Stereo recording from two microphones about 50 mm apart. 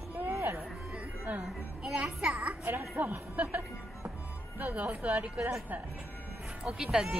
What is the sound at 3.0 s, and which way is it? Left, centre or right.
Speech, right.